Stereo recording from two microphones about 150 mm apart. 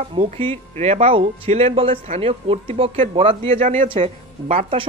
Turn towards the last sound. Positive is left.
turn(degrees=-45)  # may be behind; listen again after turning